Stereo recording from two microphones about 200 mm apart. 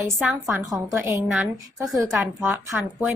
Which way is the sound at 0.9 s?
15° right (ahead or behind).